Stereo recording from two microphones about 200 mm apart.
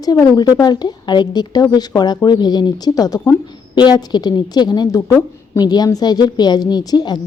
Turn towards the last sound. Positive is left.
turn(degrees=20)  # may be behind; listen again after turning